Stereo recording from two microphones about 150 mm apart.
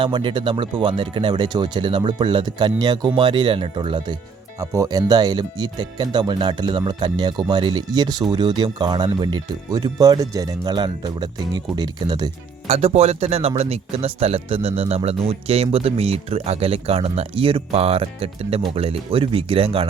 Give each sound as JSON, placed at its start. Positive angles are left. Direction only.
{"t": 0.0, "sound": "speech", "side_deg": -35}
{"t": 4.6, "sound": "speech", "side_deg": -20}
{"t": 12.6, "sound": "speech", "side_deg": -45}